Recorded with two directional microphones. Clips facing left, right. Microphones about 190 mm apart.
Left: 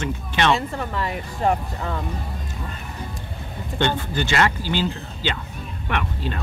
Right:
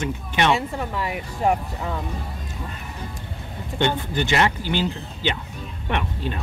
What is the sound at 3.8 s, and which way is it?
Speech, 15° right (ahead or behind).